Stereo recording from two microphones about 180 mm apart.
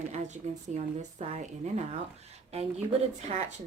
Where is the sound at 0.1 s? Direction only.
40° right (ahead or behind).